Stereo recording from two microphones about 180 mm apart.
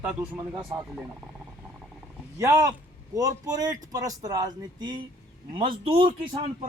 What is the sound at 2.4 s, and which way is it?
A man's voice, 20° right (ahead or behind).